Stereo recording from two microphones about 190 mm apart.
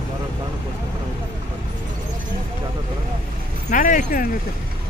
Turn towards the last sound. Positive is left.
turn(degrees=45)  # may be behind; listen again after turning